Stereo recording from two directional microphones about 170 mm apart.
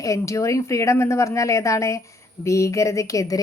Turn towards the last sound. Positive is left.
turn(degrees=20)  # may be behind; listen again after turning